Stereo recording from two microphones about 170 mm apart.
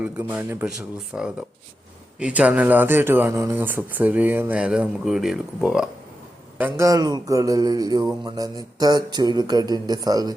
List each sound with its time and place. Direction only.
0.0 s speech: 10° right (ahead or behind)
6.6 s speech: 15° right (ahead or behind)